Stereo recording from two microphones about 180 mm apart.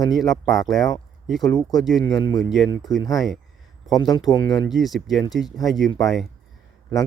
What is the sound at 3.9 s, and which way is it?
Speech, 20° left (ahead or behind).